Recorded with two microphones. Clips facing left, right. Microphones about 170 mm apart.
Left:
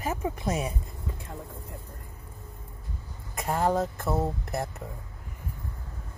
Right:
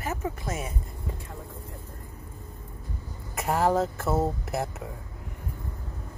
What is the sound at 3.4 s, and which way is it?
Speech, 5° right (ahead or behind).